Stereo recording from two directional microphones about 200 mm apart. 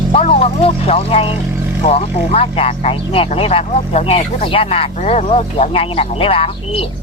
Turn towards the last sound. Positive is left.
turn(degrees=30)  # may be behind; listen again after turning